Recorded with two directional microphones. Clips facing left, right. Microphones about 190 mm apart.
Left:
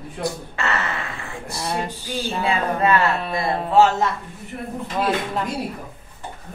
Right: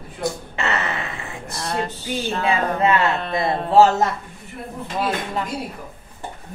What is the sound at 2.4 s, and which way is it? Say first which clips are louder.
Speech: right 1 dB; 20° right (ahead or behind).